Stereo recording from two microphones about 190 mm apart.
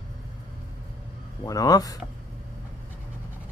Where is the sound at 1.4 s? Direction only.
20° left (ahead or behind).